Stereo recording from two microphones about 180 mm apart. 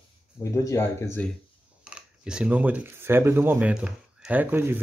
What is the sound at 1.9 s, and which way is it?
Speech, 5° right (ahead or behind).